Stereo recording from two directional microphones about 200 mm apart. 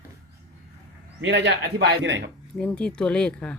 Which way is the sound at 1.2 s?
65° right (ahead or behind).